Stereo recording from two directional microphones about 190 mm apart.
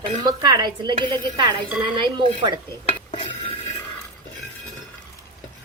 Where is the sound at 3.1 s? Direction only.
25° left (ahead or behind).